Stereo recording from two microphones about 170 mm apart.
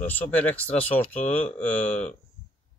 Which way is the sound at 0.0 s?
10° left (ahead or behind).